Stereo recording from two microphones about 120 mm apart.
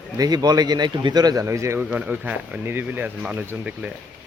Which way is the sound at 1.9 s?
10° right (ahead or behind).